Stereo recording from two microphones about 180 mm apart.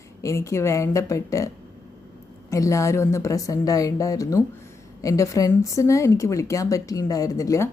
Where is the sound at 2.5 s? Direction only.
15° left (ahead or behind).